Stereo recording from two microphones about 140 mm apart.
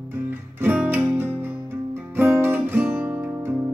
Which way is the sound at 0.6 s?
15° right (ahead or behind).